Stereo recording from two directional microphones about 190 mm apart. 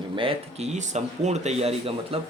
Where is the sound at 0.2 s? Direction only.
30° right (ahead or behind).